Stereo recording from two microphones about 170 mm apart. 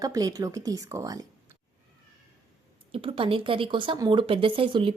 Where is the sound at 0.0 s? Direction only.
20° right (ahead or behind).